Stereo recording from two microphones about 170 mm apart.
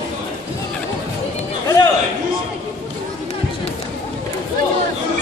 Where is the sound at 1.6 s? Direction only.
20° left (ahead or behind).